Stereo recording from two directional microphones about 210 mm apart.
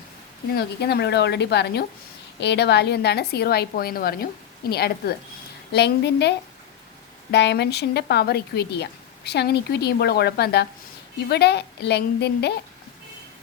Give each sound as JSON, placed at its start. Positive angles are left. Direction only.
{"t": 0.5, "sound": "a woman's voice", "side_deg": 50}